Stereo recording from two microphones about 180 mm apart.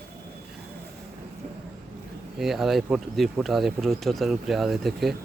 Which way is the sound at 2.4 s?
Centre (ahead or behind).